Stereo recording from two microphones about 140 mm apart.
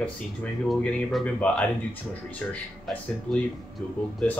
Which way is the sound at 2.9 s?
Centre (ahead or behind).